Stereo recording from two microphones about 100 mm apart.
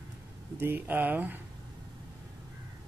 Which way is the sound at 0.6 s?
20° right (ahead or behind).